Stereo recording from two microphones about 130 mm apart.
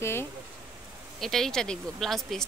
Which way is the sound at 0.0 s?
20° left (ahead or behind).